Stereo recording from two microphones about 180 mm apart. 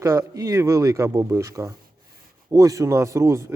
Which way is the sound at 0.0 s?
20° right (ahead or behind).